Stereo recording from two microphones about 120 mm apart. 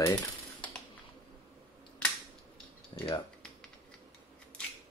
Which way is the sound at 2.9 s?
40° left (ahead or behind).